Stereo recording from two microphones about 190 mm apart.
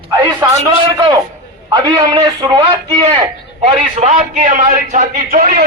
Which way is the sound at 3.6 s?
35° right (ahead or behind).